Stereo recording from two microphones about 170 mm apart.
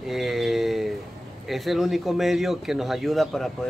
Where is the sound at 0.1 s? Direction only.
Centre (ahead or behind).